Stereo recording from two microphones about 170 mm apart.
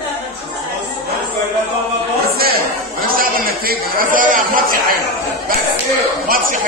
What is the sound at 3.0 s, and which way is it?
A man's voice, 60° right (ahead or behind).